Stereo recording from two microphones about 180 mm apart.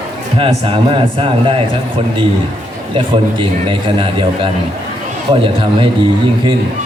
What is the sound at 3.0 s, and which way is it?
A man's voice, 30° right (ahead or behind).